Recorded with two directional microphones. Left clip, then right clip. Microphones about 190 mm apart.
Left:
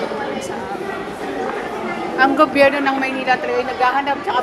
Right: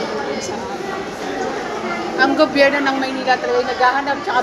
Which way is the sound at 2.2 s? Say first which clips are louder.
Left 1 dB; 45° left (ahead or behind).